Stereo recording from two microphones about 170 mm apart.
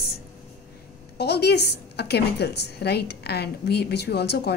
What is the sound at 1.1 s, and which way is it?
A woman's voice, 75° left (ahead or behind).